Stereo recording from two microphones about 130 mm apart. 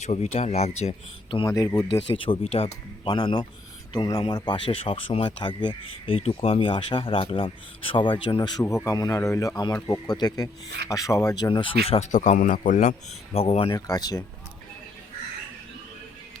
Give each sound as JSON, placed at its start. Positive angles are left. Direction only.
{"t": 0.0, "sound": "speech", "side_deg": 60}
{"t": 1.5, "sound": "speech", "side_deg": 25}
{"t": 8.6, "sound": "speech", "side_deg": 20}
{"t": 9.8, "sound": "speech", "side_deg": 30}
{"t": 12.1, "sound": "speech", "side_deg": 70}
{"t": 13.3, "sound": "speech", "side_deg": 50}
{"t": 13.7, "sound": "speech", "side_deg": 30}